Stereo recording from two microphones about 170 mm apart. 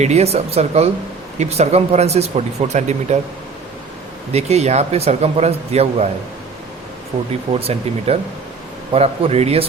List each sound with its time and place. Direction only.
0.0 s speech: 40° right (ahead or behind)
4.3 s speech: 40° right (ahead or behind)
7.5 s speech: 35° right (ahead or behind)